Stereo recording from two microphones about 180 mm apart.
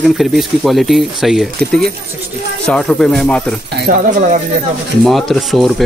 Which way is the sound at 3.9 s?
50° right (ahead or behind).